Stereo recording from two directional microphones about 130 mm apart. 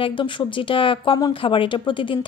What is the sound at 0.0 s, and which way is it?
Speech, 40° left (ahead or behind).